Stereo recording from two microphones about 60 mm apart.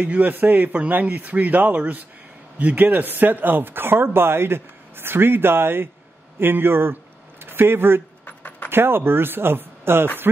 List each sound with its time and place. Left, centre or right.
0.0 s speech: right
8.3 s keys jangling: left
8.6 s speech: right